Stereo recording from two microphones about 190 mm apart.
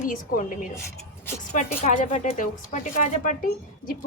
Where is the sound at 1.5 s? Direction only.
40° left (ahead or behind).